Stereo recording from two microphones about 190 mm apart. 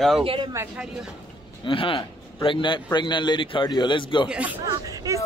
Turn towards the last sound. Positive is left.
turn(degrees=-15)  # may be behind; listen again after turning